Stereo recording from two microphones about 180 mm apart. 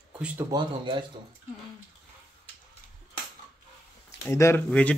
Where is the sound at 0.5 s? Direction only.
25° right (ahead or behind).